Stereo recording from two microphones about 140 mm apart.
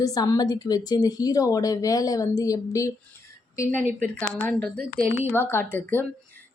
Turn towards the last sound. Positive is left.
turn(degrees=15)  # may be behind; listen again after turning